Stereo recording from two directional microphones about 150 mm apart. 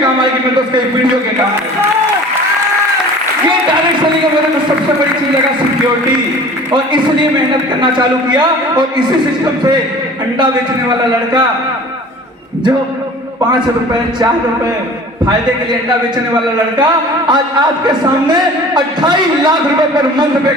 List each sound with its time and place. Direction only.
7.8 s a man's voice: 30° right (ahead or behind)
10.4 s a man's voice: 30° right (ahead or behind)
16.7 s a man's voice: 30° right (ahead or behind)